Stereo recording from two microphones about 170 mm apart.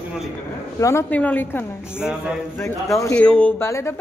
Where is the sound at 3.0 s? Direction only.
10° left (ahead or behind).